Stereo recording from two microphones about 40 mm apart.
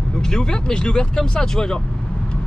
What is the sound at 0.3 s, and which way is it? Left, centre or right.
Speech, centre.